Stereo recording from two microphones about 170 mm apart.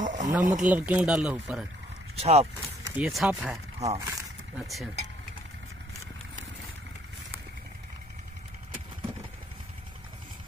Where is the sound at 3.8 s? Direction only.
40° right (ahead or behind).